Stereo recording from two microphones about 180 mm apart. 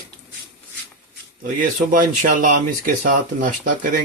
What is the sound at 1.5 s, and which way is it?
Speech, 50° right (ahead or behind).